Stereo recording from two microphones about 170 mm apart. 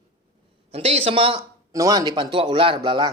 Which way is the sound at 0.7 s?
35° right (ahead or behind).